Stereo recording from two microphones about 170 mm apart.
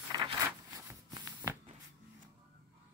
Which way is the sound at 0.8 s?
20° right (ahead or behind).